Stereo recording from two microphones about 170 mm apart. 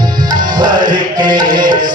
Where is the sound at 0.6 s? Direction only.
25° right (ahead or behind).